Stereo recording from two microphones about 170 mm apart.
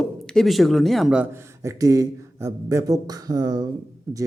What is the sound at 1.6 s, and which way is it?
A man's voice, 20° right (ahead or behind).